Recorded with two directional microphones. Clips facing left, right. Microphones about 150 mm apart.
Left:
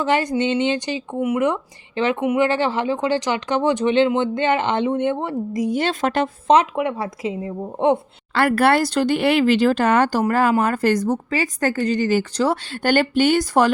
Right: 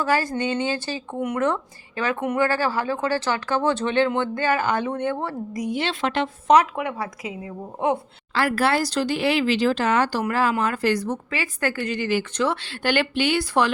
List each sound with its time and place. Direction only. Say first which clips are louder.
0.0 s speech: left 3 dB; 20° left (ahead or behind)
2.5 s speech: left 3 dB; 20° left (ahead or behind)
5.6 s a woman's voice: left 3 dB; 45° left (ahead or behind)
6.5 s speech: left 1 dB; 25° left (ahead or behind)
8.3 s a woman's voice: left 5 dB; 55° left (ahead or behind)